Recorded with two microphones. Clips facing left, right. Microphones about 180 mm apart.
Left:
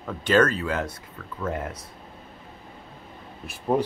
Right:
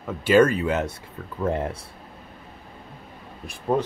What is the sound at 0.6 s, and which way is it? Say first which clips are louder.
Speech: right 3 dB; 25° right (ahead or behind).